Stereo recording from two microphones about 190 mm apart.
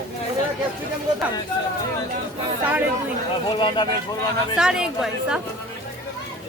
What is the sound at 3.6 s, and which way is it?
Speech, 25° left (ahead or behind).